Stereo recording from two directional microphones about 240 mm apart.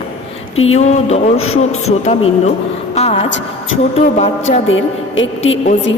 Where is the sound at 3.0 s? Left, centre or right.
Left.